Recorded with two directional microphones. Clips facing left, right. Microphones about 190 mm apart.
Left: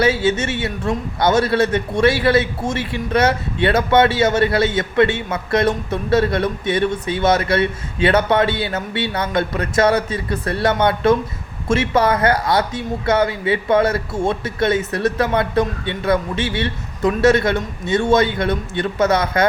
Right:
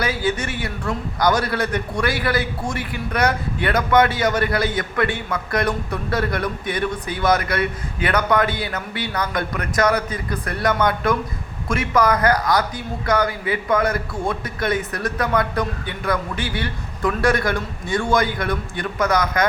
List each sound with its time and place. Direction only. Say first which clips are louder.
0.0 s a man's voice: left 6 dB; 25° left (ahead or behind)